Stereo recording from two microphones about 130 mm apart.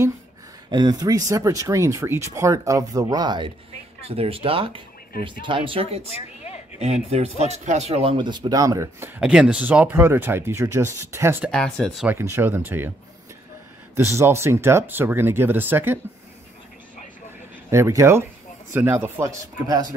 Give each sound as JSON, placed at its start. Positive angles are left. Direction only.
{"t": 0.7, "sound": "speech", "side_deg": -35}
{"t": 4.1, "sound": "speech", "side_deg": -45}
{"t": 6.0, "sound": "speech", "side_deg": 55}
{"t": 6.8, "sound": "speech", "side_deg": -55}
{"t": 9.2, "sound": "speech", "side_deg": -5}
{"t": 11.5, "sound": "speech", "side_deg": 5}
{"t": 12.1, "sound": "speech", "side_deg": -20}
{"t": 13.9, "sound": "speech", "side_deg": -20}
{"t": 17.6, "sound": "speech", "side_deg": -20}